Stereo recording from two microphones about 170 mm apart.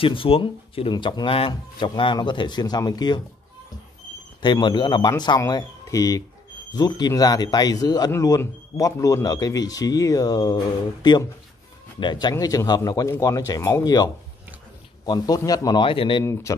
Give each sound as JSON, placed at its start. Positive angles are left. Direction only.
{"t": 0.0, "sound": "speech", "side_deg": 30}
{"t": 4.4, "sound": "speech", "side_deg": 25}
{"t": 16.5, "sound": "speech", "side_deg": 20}